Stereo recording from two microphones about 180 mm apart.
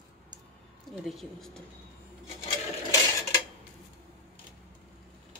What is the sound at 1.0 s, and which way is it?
Speech, centre (ahead or behind).